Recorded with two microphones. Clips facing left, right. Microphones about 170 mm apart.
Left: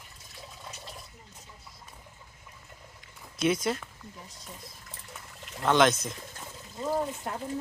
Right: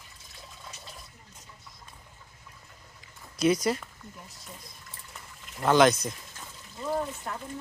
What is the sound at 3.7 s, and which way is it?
Speech, 5° right (ahead or behind).